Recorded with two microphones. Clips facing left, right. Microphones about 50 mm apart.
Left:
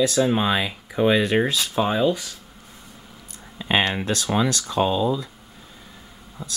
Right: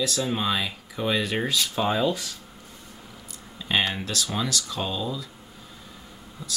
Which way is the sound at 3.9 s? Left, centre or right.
Left.